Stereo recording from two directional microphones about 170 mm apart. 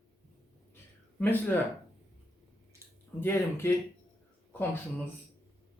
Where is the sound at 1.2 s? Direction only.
10° left (ahead or behind).